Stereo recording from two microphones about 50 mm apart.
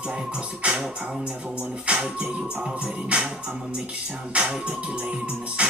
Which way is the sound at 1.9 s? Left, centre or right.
Right.